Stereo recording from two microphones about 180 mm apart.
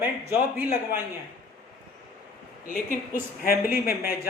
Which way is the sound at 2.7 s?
50° left (ahead or behind).